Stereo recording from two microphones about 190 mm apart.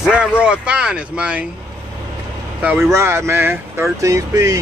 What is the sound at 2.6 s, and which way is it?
Speech, 15° right (ahead or behind).